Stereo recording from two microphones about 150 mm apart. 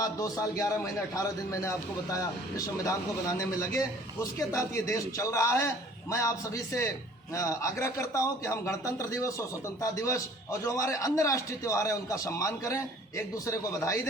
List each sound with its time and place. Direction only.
0.0 s a man's voice: 20° left (ahead or behind)